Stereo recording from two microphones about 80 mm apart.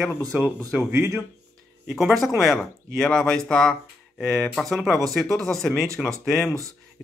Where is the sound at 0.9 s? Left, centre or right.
Right.